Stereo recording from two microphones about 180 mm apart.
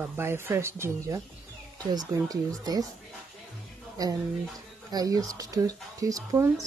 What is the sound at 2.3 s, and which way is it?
Speech, 20° right (ahead or behind).